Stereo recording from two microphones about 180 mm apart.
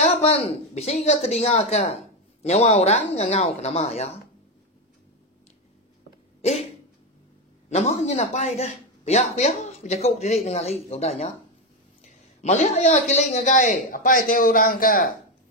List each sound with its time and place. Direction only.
0.0 s speech: 35° left (ahead or behind)
6.4 s speech: 35° left (ahead or behind)
7.7 s a man's voice: 40° left (ahead or behind)